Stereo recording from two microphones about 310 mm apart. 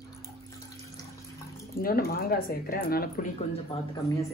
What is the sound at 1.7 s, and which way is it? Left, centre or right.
Speech, left.